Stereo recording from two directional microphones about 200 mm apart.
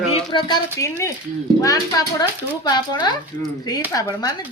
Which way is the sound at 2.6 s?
20° left (ahead or behind).